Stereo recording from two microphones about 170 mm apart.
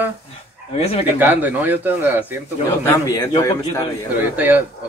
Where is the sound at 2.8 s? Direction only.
20° left (ahead or behind).